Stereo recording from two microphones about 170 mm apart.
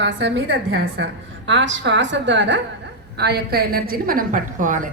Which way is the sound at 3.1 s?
70° right (ahead or behind).